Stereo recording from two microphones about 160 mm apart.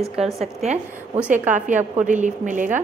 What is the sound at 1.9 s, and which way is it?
Speech, 50° right (ahead or behind).